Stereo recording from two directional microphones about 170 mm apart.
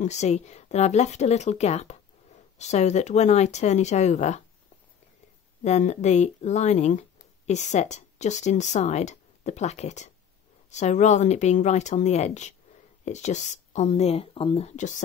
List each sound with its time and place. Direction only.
0.0 s speech: 40° left (ahead or behind)
5.6 s speech: 40° left (ahead or behind)